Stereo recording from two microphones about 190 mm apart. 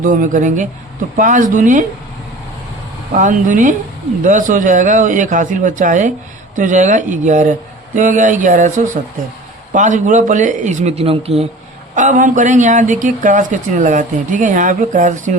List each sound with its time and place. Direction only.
0.0 s speech: 45° right (ahead or behind)
3.1 s speech: 40° right (ahead or behind)